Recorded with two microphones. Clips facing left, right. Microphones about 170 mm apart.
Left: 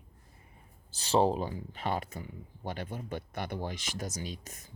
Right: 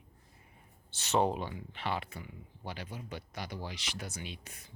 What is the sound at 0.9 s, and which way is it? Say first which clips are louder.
Speech: left 3 dB; 30° left (ahead or behind).